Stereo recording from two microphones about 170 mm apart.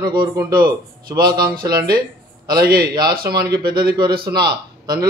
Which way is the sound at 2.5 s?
60° right (ahead or behind).